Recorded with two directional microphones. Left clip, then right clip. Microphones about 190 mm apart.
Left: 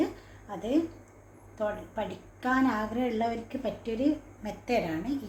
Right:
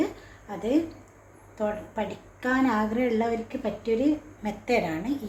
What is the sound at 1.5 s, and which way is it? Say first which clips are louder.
A woman's voice: right 3 dB; 20° right (ahead or behind).